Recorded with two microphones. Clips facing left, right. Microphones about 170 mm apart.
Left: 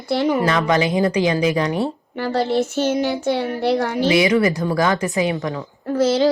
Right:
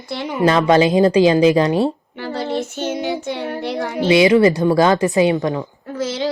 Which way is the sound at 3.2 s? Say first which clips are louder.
Left 4 dB; 40° left (ahead or behind).